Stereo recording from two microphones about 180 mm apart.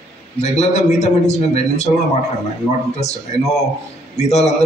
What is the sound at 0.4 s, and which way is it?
A man's voice, 40° left (ahead or behind).